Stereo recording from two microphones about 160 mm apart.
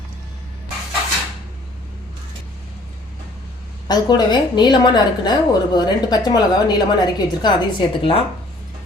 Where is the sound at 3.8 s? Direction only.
25° left (ahead or behind).